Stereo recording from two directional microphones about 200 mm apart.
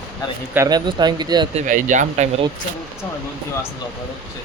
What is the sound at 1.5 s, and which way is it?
Speech, 40° right (ahead or behind).